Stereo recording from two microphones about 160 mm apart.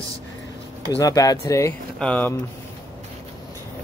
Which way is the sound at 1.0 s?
20° left (ahead or behind).